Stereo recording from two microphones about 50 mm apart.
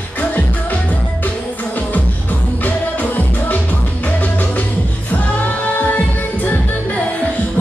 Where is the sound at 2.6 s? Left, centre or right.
Left.